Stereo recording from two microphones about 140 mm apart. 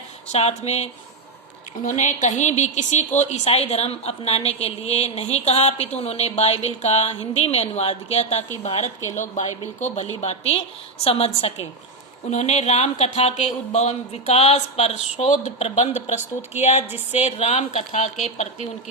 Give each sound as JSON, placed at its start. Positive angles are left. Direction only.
{"t": 0.3, "sound": "a woman's voice", "side_deg": 50}
{"t": 1.8, "sound": "a woman's voice", "side_deg": 60}